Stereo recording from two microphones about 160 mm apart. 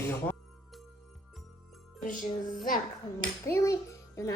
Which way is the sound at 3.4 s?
15° left (ahead or behind).